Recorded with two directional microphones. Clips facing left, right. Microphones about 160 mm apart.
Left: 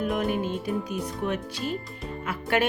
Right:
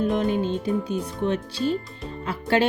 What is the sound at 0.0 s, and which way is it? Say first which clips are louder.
Speech: right 4 dB; 25° right (ahead or behind).